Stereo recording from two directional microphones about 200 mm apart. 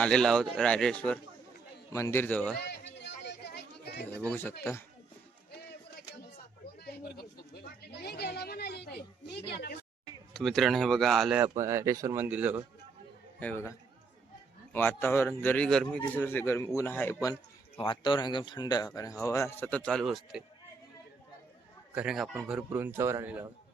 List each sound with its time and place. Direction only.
0.0 s speech: 5° left (ahead or behind)
2.6 s a sound: 55° left (ahead or behind)
4.3 s speech: 10° left (ahead or behind)
5.5 s music: 50° left (ahead or behind)
6.8 s chatter: 50° left (ahead or behind)
10.3 s speech: centre (ahead or behind)
13.4 s speech: 10° left (ahead or behind)
17.7 s speech: 25° left (ahead or behind); by 20.4 s centre (ahead or behind)
21.9 s speech: 5° right (ahead or behind)